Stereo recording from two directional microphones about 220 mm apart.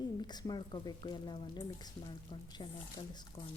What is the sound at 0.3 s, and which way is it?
Speech, 20° left (ahead or behind).